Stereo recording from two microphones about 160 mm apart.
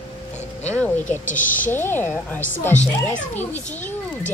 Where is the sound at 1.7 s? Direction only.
15° left (ahead or behind).